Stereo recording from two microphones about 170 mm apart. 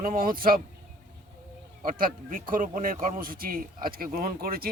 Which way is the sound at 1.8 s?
55° right (ahead or behind).